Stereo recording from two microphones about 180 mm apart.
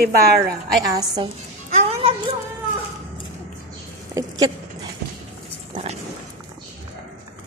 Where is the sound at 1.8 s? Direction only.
35° right (ahead or behind).